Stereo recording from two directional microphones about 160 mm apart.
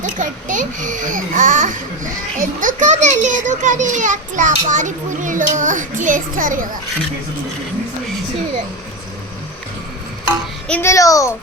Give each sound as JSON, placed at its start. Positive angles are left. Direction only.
{"t": 0.0, "sound": "a child's voice", "side_deg": -55}
{"t": 10.7, "sound": "a child's voice", "side_deg": 15}